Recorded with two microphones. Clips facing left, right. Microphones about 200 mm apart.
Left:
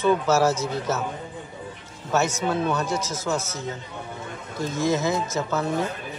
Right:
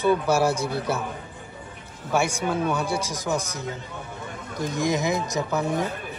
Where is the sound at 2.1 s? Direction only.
10° right (ahead or behind).